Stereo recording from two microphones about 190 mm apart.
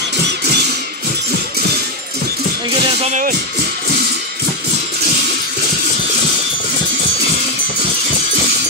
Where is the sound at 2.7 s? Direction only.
30° right (ahead or behind).